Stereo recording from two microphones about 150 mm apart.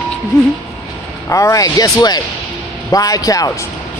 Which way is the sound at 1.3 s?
20° left (ahead or behind).